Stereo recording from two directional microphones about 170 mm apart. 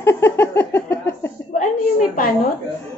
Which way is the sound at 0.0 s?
15° left (ahead or behind).